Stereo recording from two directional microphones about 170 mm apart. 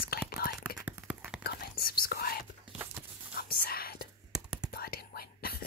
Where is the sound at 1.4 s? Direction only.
65° left (ahead or behind).